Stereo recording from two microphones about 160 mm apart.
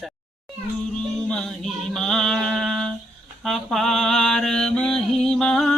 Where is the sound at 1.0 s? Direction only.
5° left (ahead or behind).